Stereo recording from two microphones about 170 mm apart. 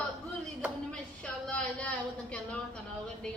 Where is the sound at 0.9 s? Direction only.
5° left (ahead or behind).